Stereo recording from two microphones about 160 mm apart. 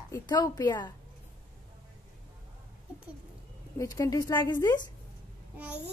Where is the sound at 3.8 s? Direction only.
20° left (ahead or behind).